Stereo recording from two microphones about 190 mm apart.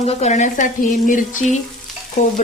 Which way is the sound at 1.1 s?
45° left (ahead or behind).